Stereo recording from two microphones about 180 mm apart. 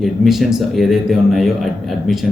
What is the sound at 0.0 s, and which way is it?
Speech, centre (ahead or behind).